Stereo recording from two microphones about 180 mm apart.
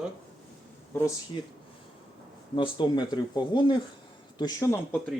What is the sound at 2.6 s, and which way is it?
Speech, 25° left (ahead or behind).